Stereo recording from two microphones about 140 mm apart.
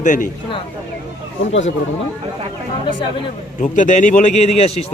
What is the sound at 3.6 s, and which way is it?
A man's voice, 65° left (ahead or behind).